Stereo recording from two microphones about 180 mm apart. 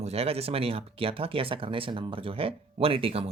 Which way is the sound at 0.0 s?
35° right (ahead or behind).